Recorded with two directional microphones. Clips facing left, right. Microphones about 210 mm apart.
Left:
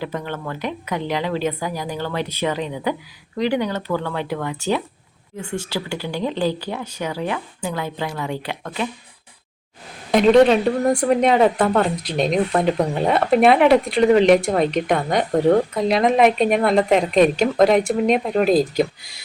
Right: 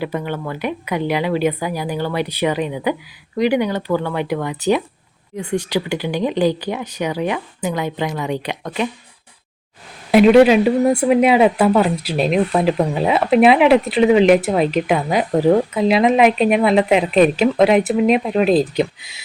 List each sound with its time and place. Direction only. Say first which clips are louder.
0.0 s speech: right 4 dB; 10° right (ahead or behind)
10.1 s speech: right 3 dB; 5° right (ahead or behind)